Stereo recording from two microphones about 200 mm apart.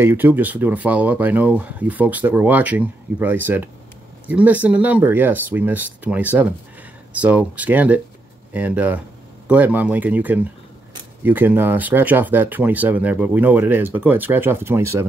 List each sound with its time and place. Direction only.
0.0 s speech: 10° right (ahead or behind)